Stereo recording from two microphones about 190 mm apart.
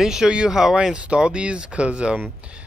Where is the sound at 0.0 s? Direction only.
5° right (ahead or behind).